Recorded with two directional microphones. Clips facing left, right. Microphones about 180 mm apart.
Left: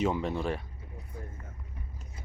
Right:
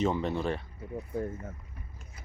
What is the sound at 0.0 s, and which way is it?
Speech, 5° left (ahead or behind).